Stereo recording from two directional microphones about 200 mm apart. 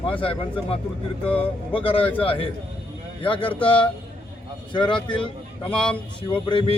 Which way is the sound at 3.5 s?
25° left (ahead or behind).